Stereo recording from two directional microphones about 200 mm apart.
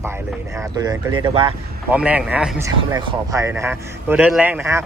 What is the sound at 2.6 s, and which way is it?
Speech, 15° right (ahead or behind).